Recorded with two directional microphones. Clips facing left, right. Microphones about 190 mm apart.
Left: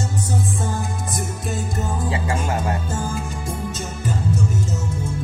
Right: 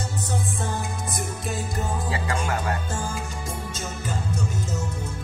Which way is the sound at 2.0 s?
25° left (ahead or behind).